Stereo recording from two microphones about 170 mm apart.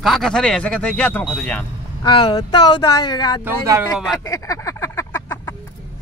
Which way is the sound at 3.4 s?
15° right (ahead or behind).